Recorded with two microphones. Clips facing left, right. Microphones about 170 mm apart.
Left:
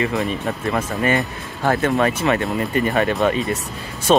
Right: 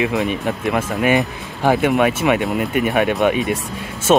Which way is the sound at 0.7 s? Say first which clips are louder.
Right 3 dB; 10° right (ahead or behind).